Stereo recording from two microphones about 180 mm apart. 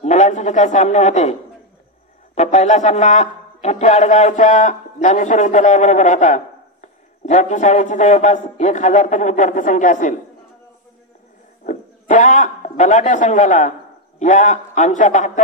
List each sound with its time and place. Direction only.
0.0 s a man's voice: 40° left (ahead or behind)
2.3 s a man's voice: 40° left (ahead or behind)
11.6 s a man's voice: 45° left (ahead or behind)